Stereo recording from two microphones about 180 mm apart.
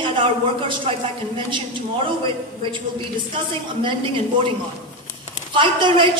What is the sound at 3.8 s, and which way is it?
Speech, 30° right (ahead or behind).